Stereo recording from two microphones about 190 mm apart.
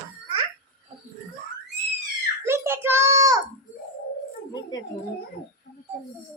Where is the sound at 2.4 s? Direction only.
15° right (ahead or behind).